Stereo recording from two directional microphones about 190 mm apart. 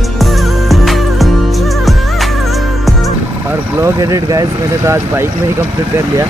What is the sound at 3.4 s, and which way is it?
Speech, 10° right (ahead or behind).